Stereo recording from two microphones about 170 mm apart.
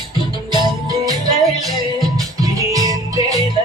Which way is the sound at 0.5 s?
25° right (ahead or behind).